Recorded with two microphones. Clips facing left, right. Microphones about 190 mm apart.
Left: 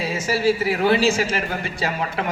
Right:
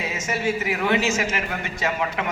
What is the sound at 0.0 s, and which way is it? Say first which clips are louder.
Speech: left 5 dB; 30° left (ahead or behind).